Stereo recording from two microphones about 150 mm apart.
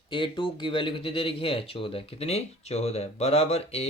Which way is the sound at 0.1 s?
35° left (ahead or behind).